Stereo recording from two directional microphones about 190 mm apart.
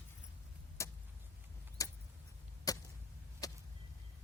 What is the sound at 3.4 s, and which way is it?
Vehicle, 20° left (ahead or behind).